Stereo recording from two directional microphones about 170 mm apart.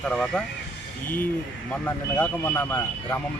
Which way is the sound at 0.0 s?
5° left (ahead or behind).